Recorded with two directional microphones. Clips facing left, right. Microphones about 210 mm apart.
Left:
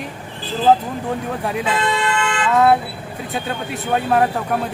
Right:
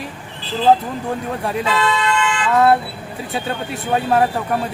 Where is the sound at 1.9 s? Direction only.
45° left (ahead or behind).